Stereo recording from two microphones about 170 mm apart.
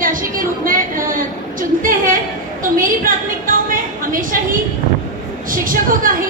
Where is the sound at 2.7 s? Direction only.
55° right (ahead or behind).